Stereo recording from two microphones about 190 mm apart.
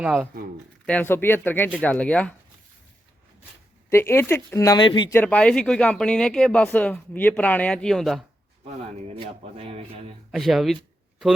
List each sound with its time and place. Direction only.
0.0 s speech: 5° right (ahead or behind)
0.9 s speech: 10° left (ahead or behind)
3.8 s speech: 15° left (ahead or behind)
5.1 s speech: 10° left (ahead or behind)
8.6 s speech: 35° right (ahead or behind)
10.3 s speech: centre (ahead or behind)